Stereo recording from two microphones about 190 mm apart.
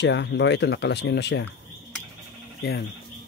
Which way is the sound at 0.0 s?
65° left (ahead or behind).